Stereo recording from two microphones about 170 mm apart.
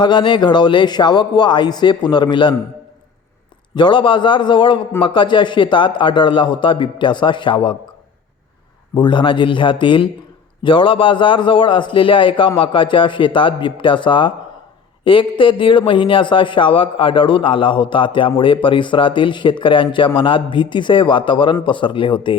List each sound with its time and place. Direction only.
0.0 s a man's voice: 25° left (ahead or behind)
3.8 s a man's voice: 25° left (ahead or behind)
9.0 s a man's voice: 30° left (ahead or behind)